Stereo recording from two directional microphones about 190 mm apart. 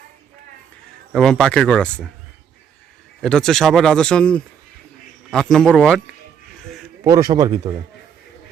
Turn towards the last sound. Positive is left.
turn(degrees=-20)  # may be behind; listen again after turning